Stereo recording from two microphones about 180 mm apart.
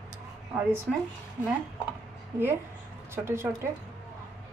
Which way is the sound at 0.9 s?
Centre (ahead or behind).